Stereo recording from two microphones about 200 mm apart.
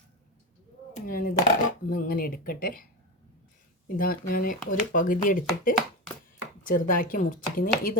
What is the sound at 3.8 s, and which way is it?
Speech, 45° left (ahead or behind).